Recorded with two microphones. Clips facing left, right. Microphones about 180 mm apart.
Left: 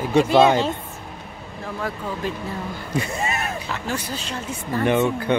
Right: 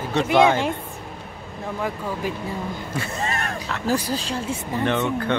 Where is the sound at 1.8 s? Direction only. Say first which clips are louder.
Right 1 dB; 15° right (ahead or behind).